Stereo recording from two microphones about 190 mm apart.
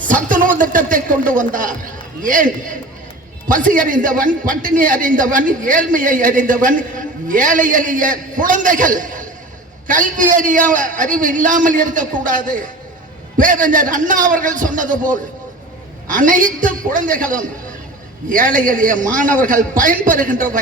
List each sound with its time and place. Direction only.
0.1 s a sound: 45° right (ahead or behind)
2.2 s a man's voice: 45° right (ahead or behind)
3.5 s a man's voice: 45° right (ahead or behind)